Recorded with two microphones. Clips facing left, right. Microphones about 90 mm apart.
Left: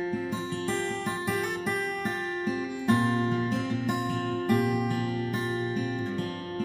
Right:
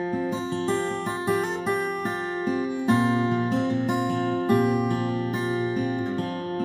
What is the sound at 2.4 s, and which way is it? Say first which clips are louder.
Music: right 4 dB; 65° right (ahead or behind).